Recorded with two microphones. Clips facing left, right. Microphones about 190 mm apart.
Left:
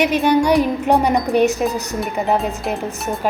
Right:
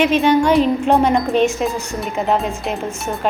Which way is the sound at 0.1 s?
15° left (ahead or behind).